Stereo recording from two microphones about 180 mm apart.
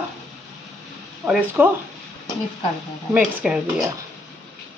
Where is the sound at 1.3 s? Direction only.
10° right (ahead or behind).